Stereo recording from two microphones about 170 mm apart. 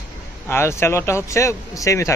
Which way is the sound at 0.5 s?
15° left (ahead or behind).